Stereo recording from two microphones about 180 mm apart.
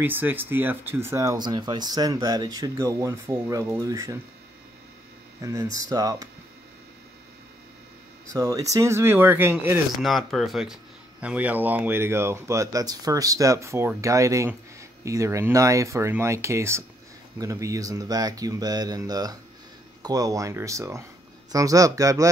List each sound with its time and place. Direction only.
0.0 s speech: 10° right (ahead or behind)
5.4 s speech: 20° right (ahead or behind)
8.3 s speech: 20° right (ahead or behind)
10.0 s speech: centre (ahead or behind); by 22.3 s 20° right (ahead or behind)